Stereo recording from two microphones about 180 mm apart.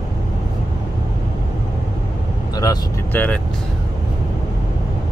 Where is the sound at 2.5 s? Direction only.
20° left (ahead or behind).